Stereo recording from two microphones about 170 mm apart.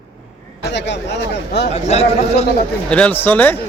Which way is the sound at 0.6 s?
90° left.